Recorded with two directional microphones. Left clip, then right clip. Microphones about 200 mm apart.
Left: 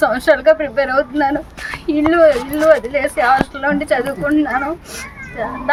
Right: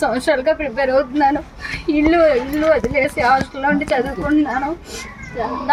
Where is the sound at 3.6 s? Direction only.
5° left (ahead or behind).